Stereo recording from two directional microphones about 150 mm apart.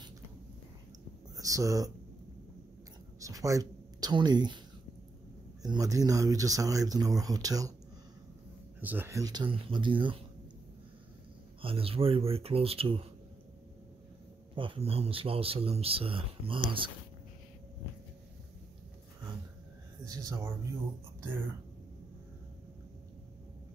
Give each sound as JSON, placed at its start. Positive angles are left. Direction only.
{"t": 1.3, "sound": "speech", "side_deg": -20}
{"t": 3.2, "sound": "speech", "side_deg": -20}
{"t": 5.6, "sound": "speech", "side_deg": -25}
{"t": 8.8, "sound": "speech", "side_deg": -15}
{"t": 11.6, "sound": "speech", "side_deg": -40}
{"t": 14.5, "sound": "speech", "side_deg": -35}
{"t": 20.1, "sound": "speech", "side_deg": -25}